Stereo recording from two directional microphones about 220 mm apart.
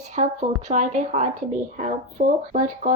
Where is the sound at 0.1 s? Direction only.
35° right (ahead or behind).